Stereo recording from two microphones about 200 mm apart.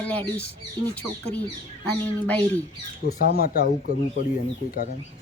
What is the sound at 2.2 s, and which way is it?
Speech, 10° left (ahead or behind).